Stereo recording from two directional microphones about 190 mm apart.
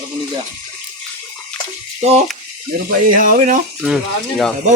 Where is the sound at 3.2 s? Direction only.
45° right (ahead or behind).